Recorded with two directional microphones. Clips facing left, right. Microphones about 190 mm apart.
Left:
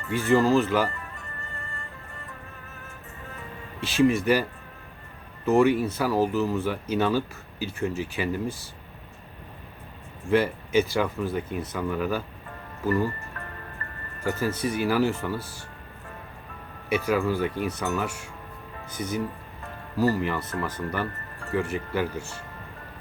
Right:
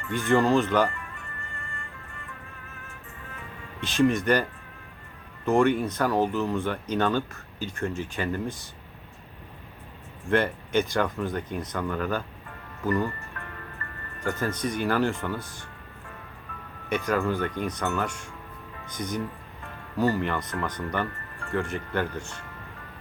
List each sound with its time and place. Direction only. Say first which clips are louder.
0.3 s speech: left 1 dB; centre (ahead or behind)
0.9 s music: even; 35° left (ahead or behind)
3.8 s speech: left 1 dB; 5° left (ahead or behind)
5.5 s speech: left 2 dB; 5° left (ahead or behind)
10.2 s speech: left 2 dB; 5° left (ahead or behind)
14.3 s speech: left 2 dB; 5° left (ahead or behind)
16.9 s speech: left 2 dB; 5° left (ahead or behind)